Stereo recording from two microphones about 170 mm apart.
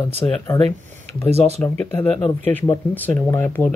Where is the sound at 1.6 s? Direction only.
10° left (ahead or behind).